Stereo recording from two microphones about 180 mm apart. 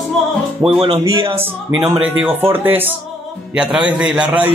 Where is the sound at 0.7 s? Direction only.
25° right (ahead or behind).